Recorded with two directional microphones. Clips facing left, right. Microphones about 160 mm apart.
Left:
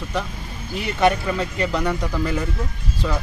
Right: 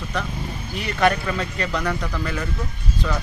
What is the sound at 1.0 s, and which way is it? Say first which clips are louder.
Speech: left 1 dB; 20° left (ahead or behind).